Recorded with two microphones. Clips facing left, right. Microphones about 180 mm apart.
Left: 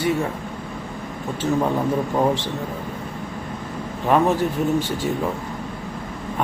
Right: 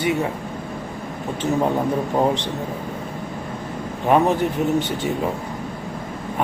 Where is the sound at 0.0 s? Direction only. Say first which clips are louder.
Even; 20° right (ahead or behind).